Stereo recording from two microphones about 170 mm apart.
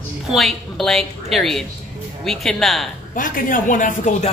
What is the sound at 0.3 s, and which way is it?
Speech, centre (ahead or behind).